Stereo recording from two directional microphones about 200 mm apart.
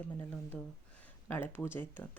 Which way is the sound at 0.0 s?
10° left (ahead or behind).